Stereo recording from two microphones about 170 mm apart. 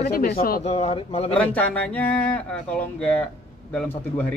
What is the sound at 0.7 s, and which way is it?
Speech, 35° left (ahead or behind).